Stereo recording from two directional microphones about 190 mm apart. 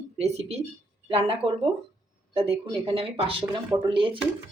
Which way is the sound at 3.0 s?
30° right (ahead or behind).